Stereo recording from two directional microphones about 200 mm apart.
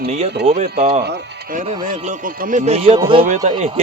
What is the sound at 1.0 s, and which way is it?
Speech, 60° right (ahead or behind).